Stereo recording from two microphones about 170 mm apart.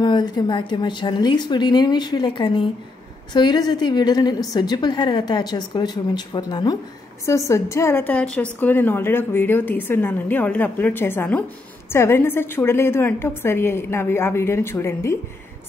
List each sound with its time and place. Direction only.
0.0 s a woman's voice: 25° left (ahead or behind)